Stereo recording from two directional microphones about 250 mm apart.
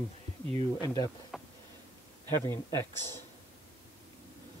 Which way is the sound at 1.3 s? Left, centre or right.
Centre.